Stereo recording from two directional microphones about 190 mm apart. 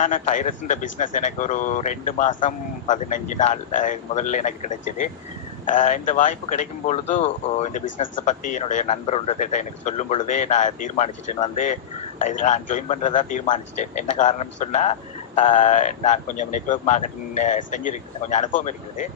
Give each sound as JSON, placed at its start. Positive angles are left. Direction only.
{"t": 0.0, "sound": "a man's voice", "side_deg": 40}